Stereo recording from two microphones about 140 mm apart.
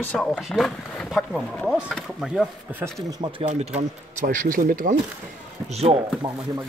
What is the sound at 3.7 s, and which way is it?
Speech, 70° right (ahead or behind).